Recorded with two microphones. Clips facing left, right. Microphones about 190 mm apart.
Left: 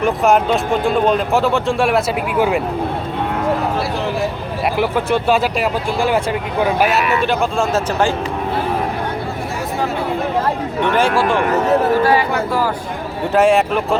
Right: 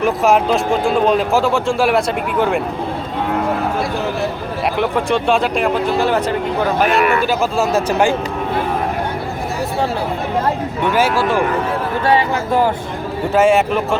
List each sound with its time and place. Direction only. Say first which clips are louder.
0.0 s speech: even; centre (ahead or behind)
4.8 s speech: even; 5° left (ahead or behind)
7.2 s speech: right 1 dB; 5° right (ahead or behind)
10.9 s speech: even; 5° right (ahead or behind)
12.1 s speech: right 1 dB; 25° right (ahead or behind)
13.3 s speech: even; centre (ahead or behind)